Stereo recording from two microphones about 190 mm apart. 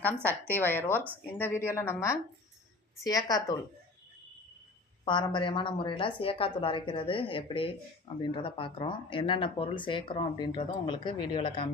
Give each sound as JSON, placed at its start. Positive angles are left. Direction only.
{"t": 0.3, "sound": "a woman's voice", "side_deg": 10}
{"t": 5.0, "sound": "speech", "side_deg": 25}